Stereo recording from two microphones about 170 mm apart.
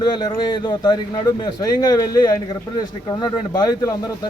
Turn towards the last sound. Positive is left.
turn(degrees=20)  # may be behind; listen again after turning